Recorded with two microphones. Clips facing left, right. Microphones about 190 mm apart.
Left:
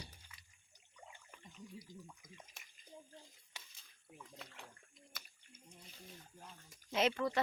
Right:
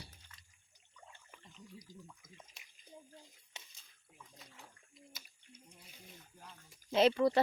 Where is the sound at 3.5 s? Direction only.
25° right (ahead or behind).